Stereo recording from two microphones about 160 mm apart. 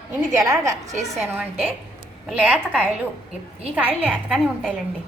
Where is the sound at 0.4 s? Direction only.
20° right (ahead or behind).